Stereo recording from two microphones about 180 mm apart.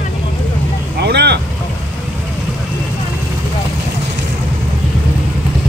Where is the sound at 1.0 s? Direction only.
65° right (ahead or behind).